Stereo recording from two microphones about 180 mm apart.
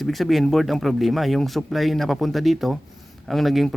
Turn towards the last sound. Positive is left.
turn(degrees=0)  # may be behind; listen again after turning